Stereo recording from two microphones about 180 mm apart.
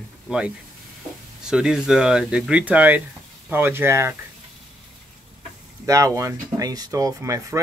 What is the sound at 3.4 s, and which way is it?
Speech, 10° right (ahead or behind).